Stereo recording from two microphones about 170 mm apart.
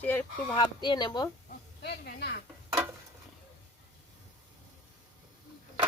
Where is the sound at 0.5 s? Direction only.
25° left (ahead or behind).